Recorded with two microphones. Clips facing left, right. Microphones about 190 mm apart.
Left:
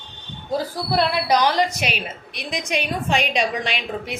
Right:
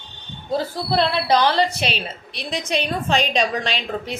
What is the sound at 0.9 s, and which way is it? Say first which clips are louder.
A woman's voice: right 1 dB; 10° left (ahead or behind).